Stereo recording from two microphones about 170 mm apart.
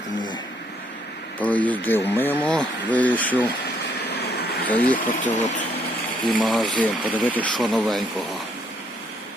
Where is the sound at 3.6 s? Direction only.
75° left (ahead or behind).